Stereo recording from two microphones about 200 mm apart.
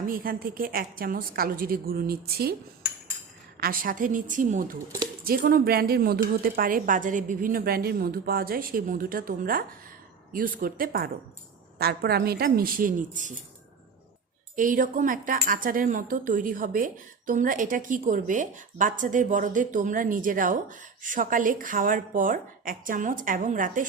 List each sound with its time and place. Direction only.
0.0 s speech: 45° right (ahead or behind)
3.6 s speech: 45° right (ahead or behind)
14.5 s speech: 40° right (ahead or behind)